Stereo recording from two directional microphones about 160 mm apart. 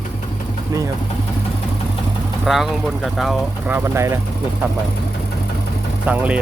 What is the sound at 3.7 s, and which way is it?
Speech, 15° right (ahead or behind).